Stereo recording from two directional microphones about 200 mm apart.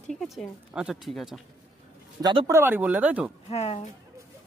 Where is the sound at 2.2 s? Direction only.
20° right (ahead or behind).